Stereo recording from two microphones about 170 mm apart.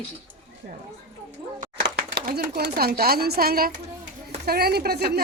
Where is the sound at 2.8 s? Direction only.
65° right (ahead or behind).